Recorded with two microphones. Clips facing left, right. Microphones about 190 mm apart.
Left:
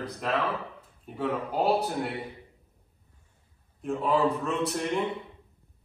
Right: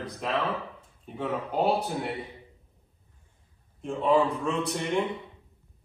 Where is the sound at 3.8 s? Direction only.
5° left (ahead or behind).